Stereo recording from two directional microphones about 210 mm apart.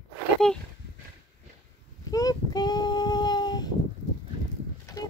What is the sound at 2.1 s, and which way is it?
Child singing, 15° left (ahead or behind).